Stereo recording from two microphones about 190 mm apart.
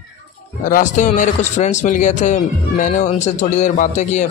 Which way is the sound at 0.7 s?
40° left (ahead or behind).